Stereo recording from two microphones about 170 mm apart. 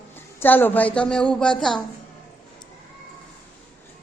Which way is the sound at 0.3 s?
10° left (ahead or behind).